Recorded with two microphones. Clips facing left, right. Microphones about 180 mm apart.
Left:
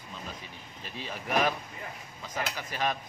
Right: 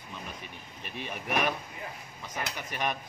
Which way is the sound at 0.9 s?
60° right (ahead or behind).